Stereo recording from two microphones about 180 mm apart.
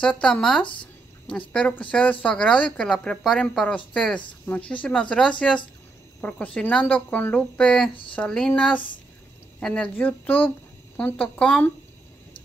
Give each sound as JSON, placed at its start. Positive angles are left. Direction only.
{"t": 0.0, "sound": "speech", "side_deg": 5}
{"t": 0.7, "sound": "a sound", "side_deg": 30}
{"t": 1.5, "sound": "speech", "side_deg": 5}
{"t": 7.9, "sound": "speech", "side_deg": 30}
{"t": 8.2, "sound": "speech", "side_deg": 5}